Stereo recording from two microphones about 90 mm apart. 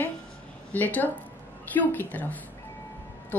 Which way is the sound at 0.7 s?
20° left (ahead or behind).